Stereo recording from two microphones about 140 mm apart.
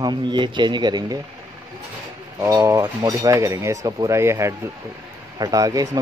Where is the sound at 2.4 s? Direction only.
25° right (ahead or behind).